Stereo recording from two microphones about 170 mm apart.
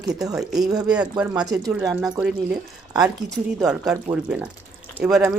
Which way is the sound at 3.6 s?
5° right (ahead or behind).